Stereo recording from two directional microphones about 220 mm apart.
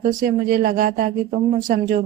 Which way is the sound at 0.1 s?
40° right (ahead or behind).